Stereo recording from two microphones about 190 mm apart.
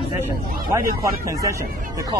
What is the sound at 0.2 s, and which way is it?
Speech, 15° right (ahead or behind).